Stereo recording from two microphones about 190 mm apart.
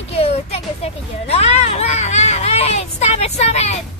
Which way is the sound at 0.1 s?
35° left (ahead or behind).